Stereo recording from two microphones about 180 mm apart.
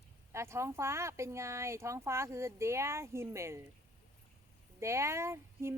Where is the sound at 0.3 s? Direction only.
15° right (ahead or behind).